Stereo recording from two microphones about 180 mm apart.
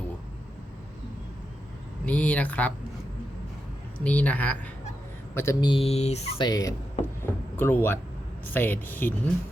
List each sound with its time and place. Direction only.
2.0 s speech: 10° left (ahead or behind)
4.0 s speech: 5° left (ahead or behind)